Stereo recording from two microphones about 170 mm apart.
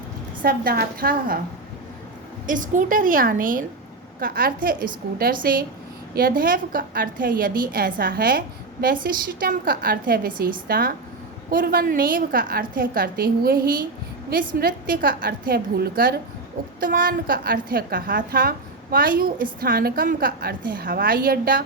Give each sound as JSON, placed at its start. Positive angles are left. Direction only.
{"t": 0.4, "sound": "a woman's voice", "side_deg": -60}
{"t": 2.5, "sound": "a woman's voice", "side_deg": -50}